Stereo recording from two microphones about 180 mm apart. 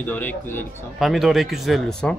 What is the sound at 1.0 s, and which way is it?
Speech, centre (ahead or behind).